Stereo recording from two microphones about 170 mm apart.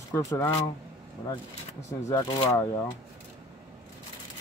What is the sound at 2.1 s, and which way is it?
Speech, 20° left (ahead or behind).